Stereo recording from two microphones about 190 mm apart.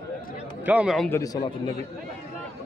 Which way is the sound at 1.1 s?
20° left (ahead or behind).